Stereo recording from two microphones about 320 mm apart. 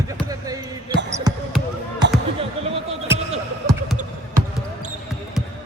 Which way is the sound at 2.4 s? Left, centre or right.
Centre.